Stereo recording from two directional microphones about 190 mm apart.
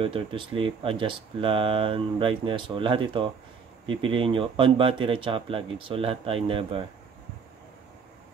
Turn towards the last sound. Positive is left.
turn(degrees=-30)  # may be behind; listen again after turning